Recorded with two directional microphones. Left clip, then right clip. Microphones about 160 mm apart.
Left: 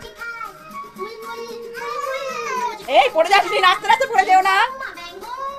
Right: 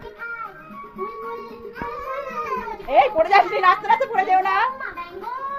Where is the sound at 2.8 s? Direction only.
25° left (ahead or behind).